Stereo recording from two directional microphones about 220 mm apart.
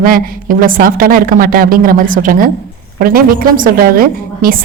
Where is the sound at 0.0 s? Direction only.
40° right (ahead or behind).